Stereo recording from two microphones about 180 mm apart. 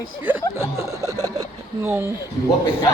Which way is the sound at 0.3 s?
15° right (ahead or behind).